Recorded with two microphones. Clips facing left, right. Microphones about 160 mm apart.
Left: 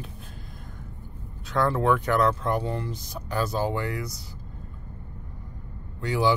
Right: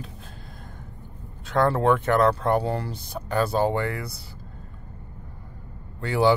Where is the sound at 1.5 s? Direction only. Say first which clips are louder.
Right 3 dB; 40° right (ahead or behind).